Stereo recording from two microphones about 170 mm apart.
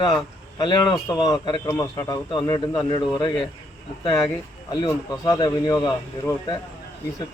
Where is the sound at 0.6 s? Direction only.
25° left (ahead or behind).